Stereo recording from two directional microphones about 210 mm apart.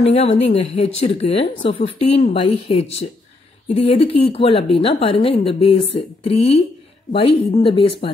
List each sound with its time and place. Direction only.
0.0 s speech: 30° left (ahead or behind)